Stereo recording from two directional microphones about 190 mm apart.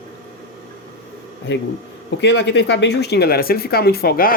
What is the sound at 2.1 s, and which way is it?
Speech, 65° left (ahead or behind).